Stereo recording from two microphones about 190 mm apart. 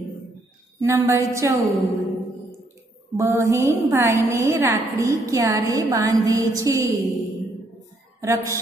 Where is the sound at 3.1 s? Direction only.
15° right (ahead or behind).